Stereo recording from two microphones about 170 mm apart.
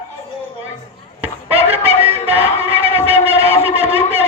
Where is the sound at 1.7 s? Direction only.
35° right (ahead or behind).